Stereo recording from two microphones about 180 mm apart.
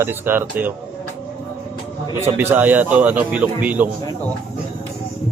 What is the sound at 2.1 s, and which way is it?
Speech, 10° right (ahead or behind).